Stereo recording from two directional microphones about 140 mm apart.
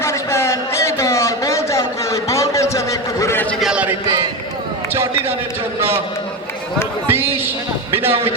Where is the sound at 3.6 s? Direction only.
5° right (ahead or behind).